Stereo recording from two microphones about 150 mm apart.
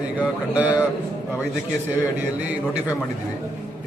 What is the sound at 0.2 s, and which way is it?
Speech, 10° right (ahead or behind).